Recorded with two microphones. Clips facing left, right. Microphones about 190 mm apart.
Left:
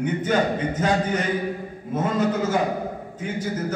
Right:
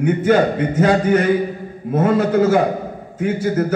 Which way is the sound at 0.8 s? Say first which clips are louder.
Right 10 dB; 60° right (ahead or behind).